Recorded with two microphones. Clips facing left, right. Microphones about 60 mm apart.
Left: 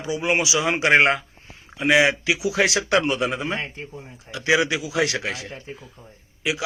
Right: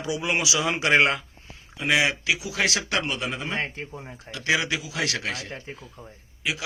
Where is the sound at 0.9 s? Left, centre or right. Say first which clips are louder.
Left 3 dB; left.